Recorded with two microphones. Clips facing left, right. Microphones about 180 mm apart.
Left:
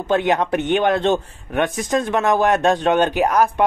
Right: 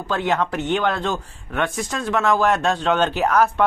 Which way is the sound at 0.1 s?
20° left (ahead or behind).